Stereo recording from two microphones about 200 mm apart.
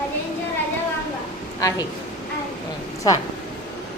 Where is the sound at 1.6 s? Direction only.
15° left (ahead or behind).